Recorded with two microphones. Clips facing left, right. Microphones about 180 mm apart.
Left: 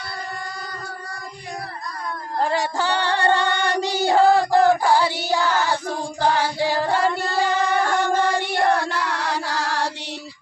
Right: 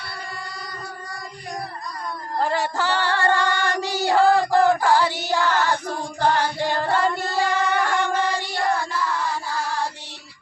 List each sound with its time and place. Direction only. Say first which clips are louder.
2.4 s female singing: left 1 dB; 10° left (ahead or behind)
7.7 s music: left 2 dB; 35° left (ahead or behind)
8.4 s child singing: left 4 dB; 60° left (ahead or behind); by 9.9 s 85° left